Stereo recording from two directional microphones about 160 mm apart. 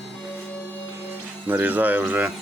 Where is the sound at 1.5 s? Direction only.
10° right (ahead or behind).